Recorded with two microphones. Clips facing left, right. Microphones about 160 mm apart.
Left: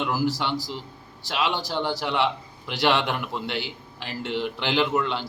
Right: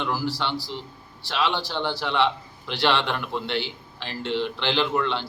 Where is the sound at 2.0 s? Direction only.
10° left (ahead or behind).